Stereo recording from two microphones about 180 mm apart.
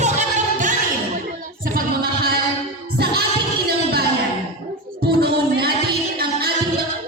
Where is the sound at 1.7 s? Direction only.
60° right (ahead or behind).